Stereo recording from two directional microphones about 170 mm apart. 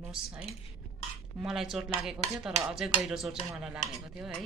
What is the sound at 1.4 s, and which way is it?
A woman's voice, centre (ahead or behind).